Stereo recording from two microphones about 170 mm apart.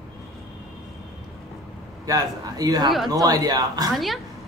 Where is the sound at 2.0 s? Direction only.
20° right (ahead or behind).